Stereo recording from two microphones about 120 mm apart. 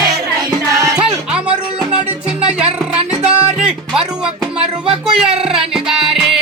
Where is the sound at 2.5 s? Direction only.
10° right (ahead or behind).